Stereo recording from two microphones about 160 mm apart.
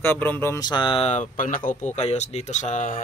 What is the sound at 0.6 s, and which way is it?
Speech, 30° left (ahead or behind).